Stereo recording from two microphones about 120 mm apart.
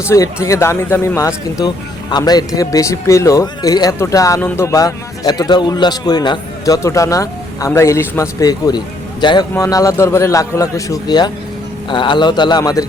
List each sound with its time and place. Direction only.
0.1 s speech: 25° left (ahead or behind)
1.5 s speech: 35° left (ahead or behind)
6.7 s speech: 25° left (ahead or behind)
9.6 s speech: 25° left (ahead or behind)